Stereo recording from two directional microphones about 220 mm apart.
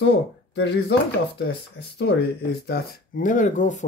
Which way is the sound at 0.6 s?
50° left (ahead or behind).